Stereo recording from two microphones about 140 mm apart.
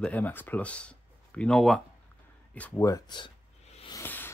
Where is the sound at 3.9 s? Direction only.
15° left (ahead or behind).